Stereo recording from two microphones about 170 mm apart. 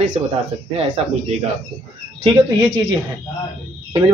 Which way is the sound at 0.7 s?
35° right (ahead or behind).